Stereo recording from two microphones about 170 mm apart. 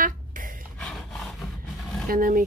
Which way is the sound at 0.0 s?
55° right (ahead or behind).